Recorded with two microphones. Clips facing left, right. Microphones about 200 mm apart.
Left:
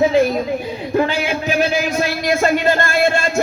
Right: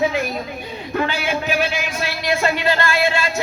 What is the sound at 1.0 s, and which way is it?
A man's voice, 40° left (ahead or behind).